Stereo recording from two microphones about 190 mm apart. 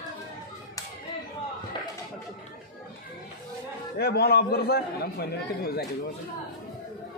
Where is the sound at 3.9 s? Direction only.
55° left (ahead or behind).